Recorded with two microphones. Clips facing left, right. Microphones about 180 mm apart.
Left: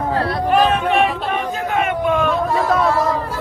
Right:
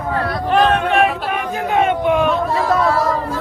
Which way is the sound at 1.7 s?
20° right (ahead or behind).